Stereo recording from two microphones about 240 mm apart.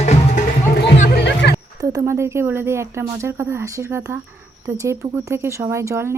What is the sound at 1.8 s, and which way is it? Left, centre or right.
Speech, centre.